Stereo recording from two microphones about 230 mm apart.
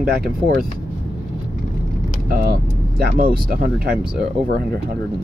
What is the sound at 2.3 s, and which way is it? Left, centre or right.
Speech, right.